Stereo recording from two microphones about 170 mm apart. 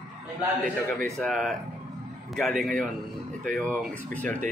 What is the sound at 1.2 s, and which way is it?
Speech, centre (ahead or behind).